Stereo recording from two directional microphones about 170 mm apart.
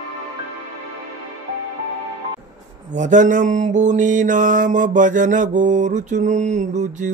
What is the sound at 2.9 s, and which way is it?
Mantra, 45° right (ahead or behind).